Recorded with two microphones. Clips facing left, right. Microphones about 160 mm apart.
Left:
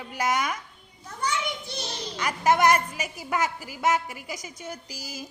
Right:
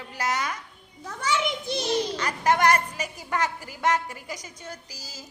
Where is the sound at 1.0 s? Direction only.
90° right.